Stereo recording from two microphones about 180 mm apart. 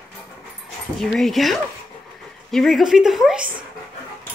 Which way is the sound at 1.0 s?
Centre (ahead or behind).